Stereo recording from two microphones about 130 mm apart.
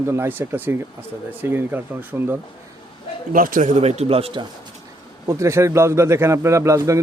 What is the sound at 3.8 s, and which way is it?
Speech, 55° right (ahead or behind).